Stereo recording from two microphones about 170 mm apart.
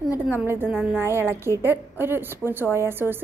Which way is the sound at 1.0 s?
15° right (ahead or behind).